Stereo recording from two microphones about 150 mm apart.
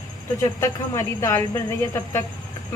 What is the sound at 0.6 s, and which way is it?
Speech, 20° left (ahead or behind).